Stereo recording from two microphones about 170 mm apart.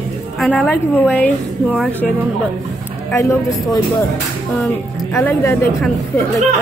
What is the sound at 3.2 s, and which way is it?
Speech, 15° left (ahead or behind).